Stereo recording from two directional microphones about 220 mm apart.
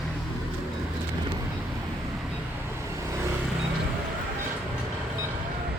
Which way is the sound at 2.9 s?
15° right (ahead or behind).